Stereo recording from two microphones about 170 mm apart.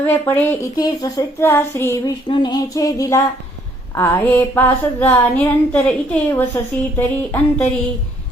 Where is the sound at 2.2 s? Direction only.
25° left (ahead or behind); by 7.7 s 10° left (ahead or behind).